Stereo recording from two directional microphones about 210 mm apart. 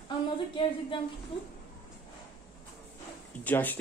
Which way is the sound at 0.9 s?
25° left (ahead or behind).